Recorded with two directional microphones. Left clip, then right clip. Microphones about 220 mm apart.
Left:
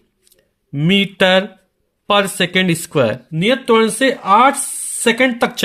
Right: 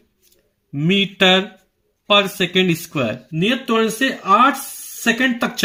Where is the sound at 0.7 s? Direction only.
45° left (ahead or behind).